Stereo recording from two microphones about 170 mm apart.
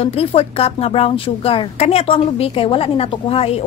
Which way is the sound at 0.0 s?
35° left (ahead or behind).